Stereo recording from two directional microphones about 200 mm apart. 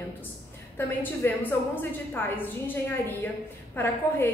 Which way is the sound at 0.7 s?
10° left (ahead or behind).